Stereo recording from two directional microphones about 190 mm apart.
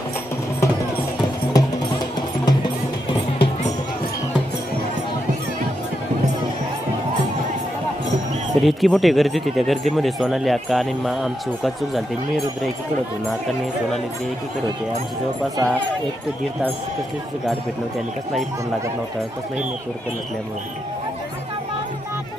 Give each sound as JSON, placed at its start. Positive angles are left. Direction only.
{"t": 1.5, "sound": "music", "side_deg": 20}
{"t": 8.6, "sound": "speech", "side_deg": 0}
{"t": 15.5, "sound": "speech", "side_deg": -15}